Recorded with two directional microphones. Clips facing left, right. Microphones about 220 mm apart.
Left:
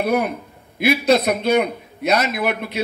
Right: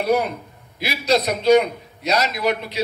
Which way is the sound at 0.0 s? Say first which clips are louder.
Even; 55° left (ahead or behind).